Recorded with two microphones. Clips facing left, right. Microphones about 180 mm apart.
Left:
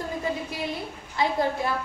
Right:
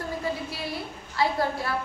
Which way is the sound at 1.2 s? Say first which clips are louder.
Even; 20° left (ahead or behind).